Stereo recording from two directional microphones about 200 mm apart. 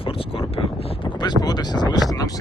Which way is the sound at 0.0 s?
25° left (ahead or behind).